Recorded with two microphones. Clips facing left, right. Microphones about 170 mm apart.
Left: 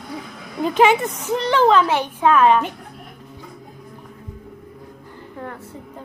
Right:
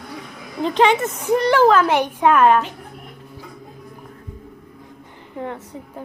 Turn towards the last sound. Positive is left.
turn(degrees=-20)  # may be behind; listen again after turning